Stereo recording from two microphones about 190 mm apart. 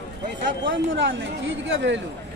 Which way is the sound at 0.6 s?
75° right (ahead or behind).